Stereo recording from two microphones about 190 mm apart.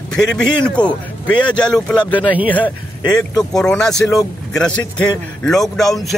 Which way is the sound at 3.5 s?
5° left (ahead or behind).